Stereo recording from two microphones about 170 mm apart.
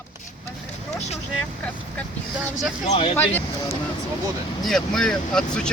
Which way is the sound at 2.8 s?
35° left (ahead or behind).